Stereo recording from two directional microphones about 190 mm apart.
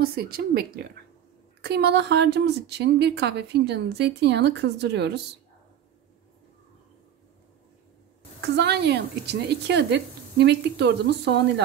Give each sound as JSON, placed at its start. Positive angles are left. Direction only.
{"t": 0.0, "sound": "a woman's voice", "side_deg": -55}
{"t": 8.4, "sound": "a woman's voice", "side_deg": -60}